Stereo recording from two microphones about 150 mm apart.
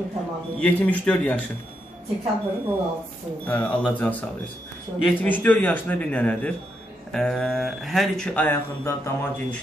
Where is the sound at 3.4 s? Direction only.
10° left (ahead or behind).